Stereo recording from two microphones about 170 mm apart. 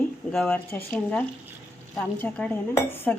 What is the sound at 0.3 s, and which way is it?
Dishes, 10° left (ahead or behind).